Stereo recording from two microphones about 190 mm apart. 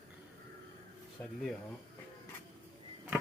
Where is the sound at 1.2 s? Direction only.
10° left (ahead or behind).